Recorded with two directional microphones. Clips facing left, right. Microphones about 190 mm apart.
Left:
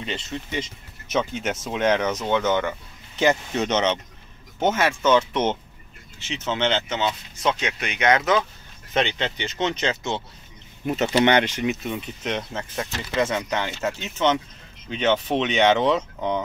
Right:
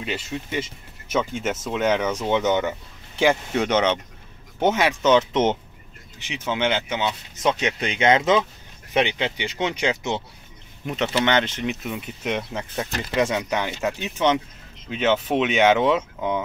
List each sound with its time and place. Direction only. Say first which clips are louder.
0.0 s speech: right 2 dB; 10° right (ahead or behind)
2.3 s speech: right 1 dB; 20° right (ahead or behind)
3.6 s speech: right 1 dB; 10° right (ahead or behind)
7.8 s speech: right 2 dB; 30° right (ahead or behind)
8.9 s speech: right 2 dB; 10° right (ahead or behind)
11.1 s speech: left 3 dB; 15° left (ahead or behind)
11.6 s speech: left 2 dB; centre (ahead or behind)